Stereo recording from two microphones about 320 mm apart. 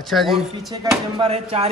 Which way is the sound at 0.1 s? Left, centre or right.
Centre.